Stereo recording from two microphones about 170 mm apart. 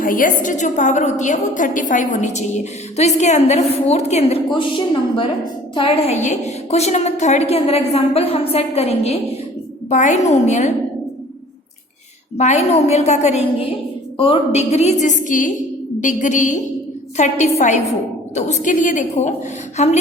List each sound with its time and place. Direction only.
0.0 s a woman's voice: 55° left (ahead or behind)
12.4 s a woman's voice: 40° left (ahead or behind)